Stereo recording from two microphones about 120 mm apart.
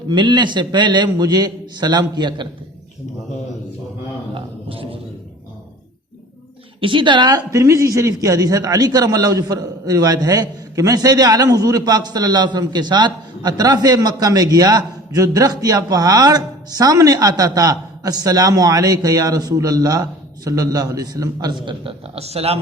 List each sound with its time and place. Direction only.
0.1 s speech: 40° right (ahead or behind)
4.4 s a sound: 50° right (ahead or behind)
6.7 s speech: 45° right (ahead or behind)